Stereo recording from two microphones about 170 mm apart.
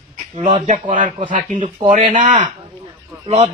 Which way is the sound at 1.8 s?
50° right (ahead or behind).